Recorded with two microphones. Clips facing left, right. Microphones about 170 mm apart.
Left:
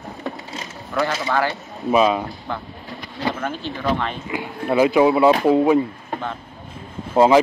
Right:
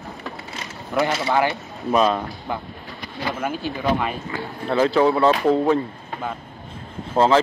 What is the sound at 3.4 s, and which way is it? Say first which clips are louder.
Speech: right 1 dB; 10° right (ahead or behind).